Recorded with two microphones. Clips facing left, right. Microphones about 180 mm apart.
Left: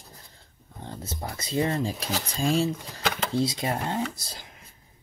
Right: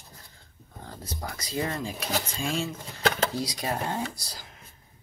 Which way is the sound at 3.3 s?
25° left (ahead or behind).